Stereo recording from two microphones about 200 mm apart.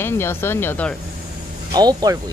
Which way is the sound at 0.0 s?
10° left (ahead or behind).